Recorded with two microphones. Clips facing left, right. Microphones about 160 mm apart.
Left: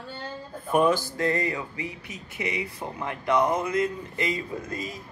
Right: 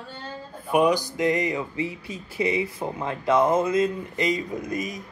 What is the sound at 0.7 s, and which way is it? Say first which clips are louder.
Speech: right 1 dB; 15° right (ahead or behind).